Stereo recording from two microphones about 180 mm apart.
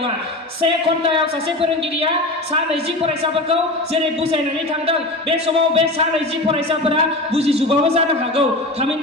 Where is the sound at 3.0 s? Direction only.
35° right (ahead or behind).